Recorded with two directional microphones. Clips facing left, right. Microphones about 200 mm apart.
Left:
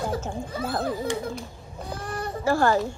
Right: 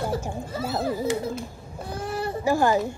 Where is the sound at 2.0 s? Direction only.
5° right (ahead or behind).